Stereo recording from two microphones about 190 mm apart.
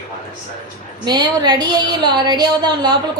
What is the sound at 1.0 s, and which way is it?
A woman's voice, 20° right (ahead or behind).